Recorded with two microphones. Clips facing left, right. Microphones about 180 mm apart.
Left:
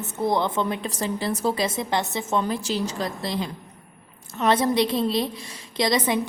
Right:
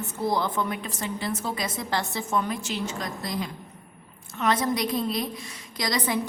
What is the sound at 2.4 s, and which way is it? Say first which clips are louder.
A woman's voice: left 4 dB; 35° left (ahead or behind).